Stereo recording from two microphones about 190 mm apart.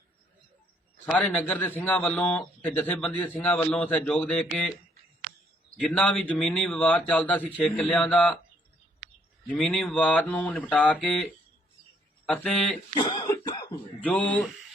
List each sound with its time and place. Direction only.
1.1 s a man's voice: 5° left (ahead or behind)
5.8 s a man's voice: 5° left (ahead or behind)
9.6 s a man's voice: centre (ahead or behind)
12.9 s cough: 20° left (ahead or behind)
14.0 s a man's voice: 5° left (ahead or behind)